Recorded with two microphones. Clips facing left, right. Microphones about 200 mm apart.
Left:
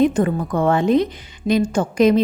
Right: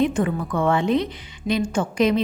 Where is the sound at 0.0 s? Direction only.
40° left (ahead or behind).